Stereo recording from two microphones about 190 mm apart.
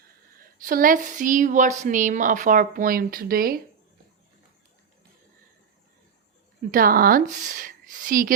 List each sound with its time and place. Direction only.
0.3 s speech: 50° right (ahead or behind)
6.6 s a woman's voice: 45° right (ahead or behind)